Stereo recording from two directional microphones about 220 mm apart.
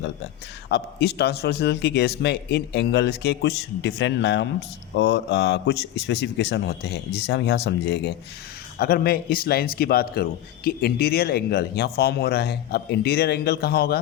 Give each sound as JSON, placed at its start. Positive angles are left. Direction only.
{"t": 0.7, "sound": "a man's voice", "side_deg": 50}